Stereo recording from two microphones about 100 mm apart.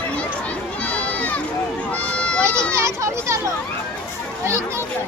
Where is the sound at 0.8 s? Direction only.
15° left (ahead or behind).